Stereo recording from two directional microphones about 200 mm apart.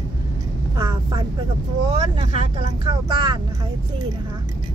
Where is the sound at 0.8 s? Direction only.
20° right (ahead or behind).